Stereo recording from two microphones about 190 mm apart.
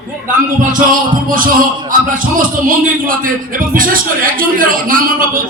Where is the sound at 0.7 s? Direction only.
45° right (ahead or behind).